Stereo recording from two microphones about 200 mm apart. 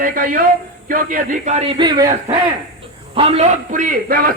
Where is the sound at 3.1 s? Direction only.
30° right (ahead or behind); by 4.4 s 45° right (ahead or behind).